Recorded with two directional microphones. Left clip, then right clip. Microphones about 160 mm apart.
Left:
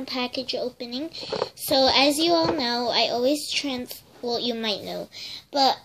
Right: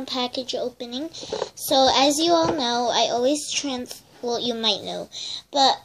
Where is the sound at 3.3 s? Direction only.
45° left (ahead or behind).